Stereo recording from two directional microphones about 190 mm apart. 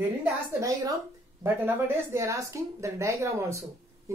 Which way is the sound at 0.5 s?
15° right (ahead or behind).